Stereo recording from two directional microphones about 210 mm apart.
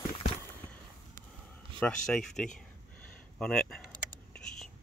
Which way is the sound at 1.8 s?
5° left (ahead or behind).